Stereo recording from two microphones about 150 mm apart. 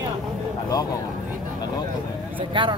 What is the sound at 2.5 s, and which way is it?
Speech, 35° right (ahead or behind).